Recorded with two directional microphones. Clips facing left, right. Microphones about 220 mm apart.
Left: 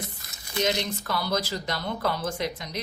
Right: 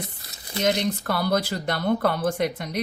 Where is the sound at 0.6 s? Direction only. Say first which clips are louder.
Right 4 dB; 55° right (ahead or behind).